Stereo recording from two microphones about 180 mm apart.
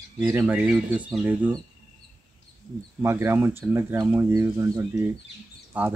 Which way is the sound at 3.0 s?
10° right (ahead or behind).